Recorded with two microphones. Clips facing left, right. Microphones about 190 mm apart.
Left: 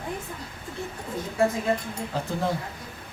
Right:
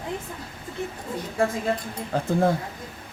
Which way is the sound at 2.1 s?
55° right (ahead or behind).